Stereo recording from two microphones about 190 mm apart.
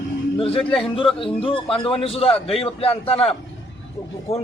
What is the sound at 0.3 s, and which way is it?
Speech, 30° left (ahead or behind).